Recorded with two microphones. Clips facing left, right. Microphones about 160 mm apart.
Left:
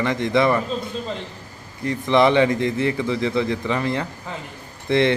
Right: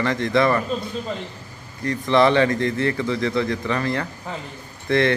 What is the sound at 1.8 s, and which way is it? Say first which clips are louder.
A man's voice: even; 20° left (ahead or behind).